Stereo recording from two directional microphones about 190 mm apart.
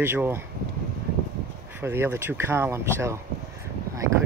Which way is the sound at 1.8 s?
10° right (ahead or behind).